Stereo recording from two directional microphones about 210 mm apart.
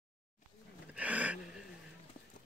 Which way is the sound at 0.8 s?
5° right (ahead or behind).